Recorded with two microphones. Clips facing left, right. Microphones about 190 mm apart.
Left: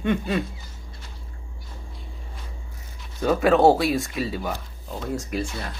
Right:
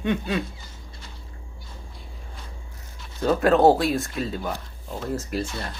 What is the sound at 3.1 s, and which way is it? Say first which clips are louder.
Speech: even; 5° left (ahead or behind).